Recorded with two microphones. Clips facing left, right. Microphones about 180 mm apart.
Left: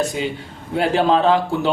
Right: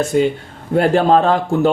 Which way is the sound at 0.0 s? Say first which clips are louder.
Right 7 dB; 55° right (ahead or behind).